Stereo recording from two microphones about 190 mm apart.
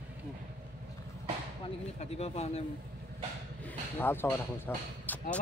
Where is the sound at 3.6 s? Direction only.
10° left (ahead or behind).